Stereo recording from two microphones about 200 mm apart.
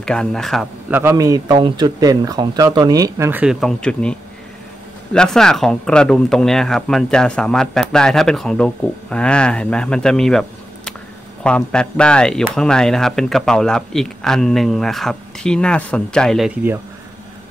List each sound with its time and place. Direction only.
0.0 s speech: 5° left (ahead or behind)
0.9 s speech: 15° right (ahead or behind); by 10.4 s centre (ahead or behind)
11.4 s speech: 5° left (ahead or behind)